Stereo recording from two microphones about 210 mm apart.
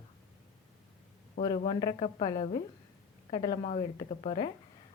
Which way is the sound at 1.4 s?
30° left (ahead or behind).